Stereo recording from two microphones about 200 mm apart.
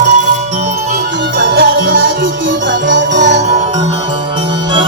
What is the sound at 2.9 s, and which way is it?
Music, 60° right (ahead or behind).